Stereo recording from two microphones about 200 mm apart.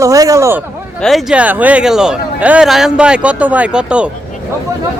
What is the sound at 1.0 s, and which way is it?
A man's voice, 5° right (ahead or behind).